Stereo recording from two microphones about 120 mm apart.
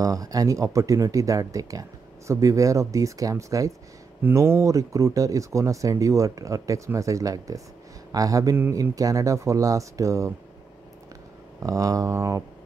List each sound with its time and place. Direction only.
0.0 s speech: 30° right (ahead or behind)
11.6 s speech: 30° right (ahead or behind)